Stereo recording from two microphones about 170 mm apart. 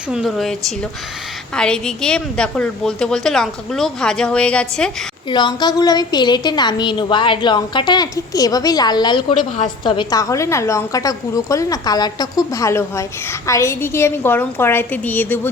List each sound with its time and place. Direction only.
0.1 s a woman's voice: centre (ahead or behind)
1.5 s a woman's voice: 5° left (ahead or behind)
5.3 s a woman's voice: 25° left (ahead or behind)